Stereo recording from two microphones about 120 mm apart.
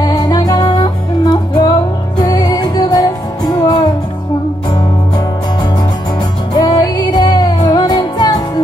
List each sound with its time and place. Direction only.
0.0 s music: 35° left (ahead or behind)
6.5 s music: 35° left (ahead or behind)